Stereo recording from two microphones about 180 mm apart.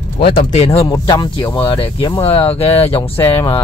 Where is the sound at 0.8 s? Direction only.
20° left (ahead or behind).